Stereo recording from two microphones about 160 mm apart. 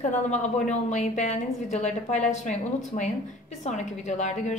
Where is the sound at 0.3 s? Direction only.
45° left (ahead or behind).